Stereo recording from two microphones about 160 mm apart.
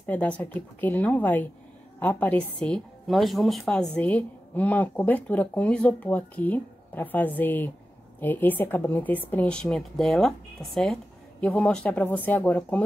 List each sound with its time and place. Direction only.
0.0 s a woman's voice: 10° left (ahead or behind)